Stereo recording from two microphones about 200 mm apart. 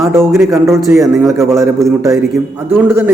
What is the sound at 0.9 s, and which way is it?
A man's voice, 15° right (ahead or behind).